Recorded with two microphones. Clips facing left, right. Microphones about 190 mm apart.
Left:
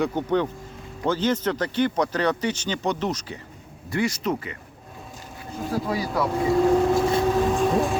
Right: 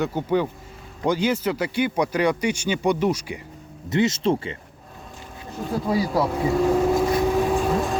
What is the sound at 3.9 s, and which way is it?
Speech, 25° right (ahead or behind).